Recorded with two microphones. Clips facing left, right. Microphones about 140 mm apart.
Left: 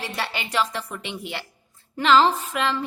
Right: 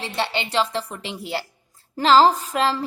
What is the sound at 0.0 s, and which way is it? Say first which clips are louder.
A woman's voice: right 4 dB; 25° right (ahead or behind).